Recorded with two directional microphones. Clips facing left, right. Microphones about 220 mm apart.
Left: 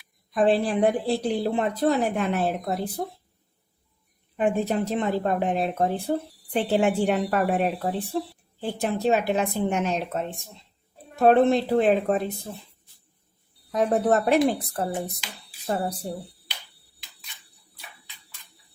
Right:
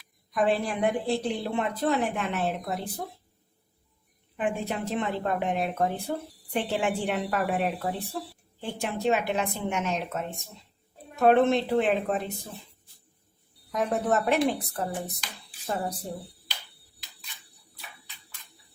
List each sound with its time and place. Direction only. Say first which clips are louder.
0.3 s a woman's voice: left 5 dB; 30° left (ahead or behind)
4.4 s a woman's voice: left 6 dB; 40° left (ahead or behind)
13.7 s a woman's voice: left 5 dB; 35° left (ahead or behind)